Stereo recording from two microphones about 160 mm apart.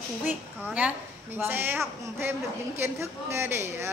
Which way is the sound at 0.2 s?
10° right (ahead or behind).